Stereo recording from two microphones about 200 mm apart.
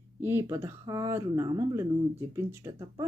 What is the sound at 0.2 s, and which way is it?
Speech, 10° right (ahead or behind).